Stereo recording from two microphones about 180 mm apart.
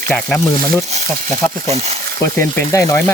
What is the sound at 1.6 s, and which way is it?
Speech, 35° right (ahead or behind).